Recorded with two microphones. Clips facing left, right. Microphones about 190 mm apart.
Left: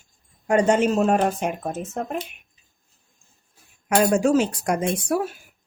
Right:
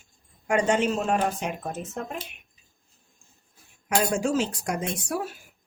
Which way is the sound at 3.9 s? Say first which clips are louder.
Left 6 dB; 60° left (ahead or behind).